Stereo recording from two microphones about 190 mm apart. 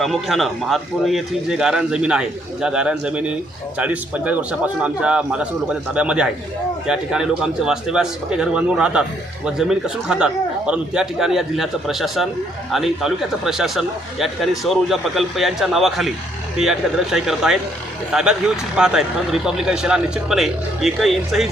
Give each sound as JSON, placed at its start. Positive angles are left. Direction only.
{"t": 0.0, "sound": "a man's voice", "side_deg": 0}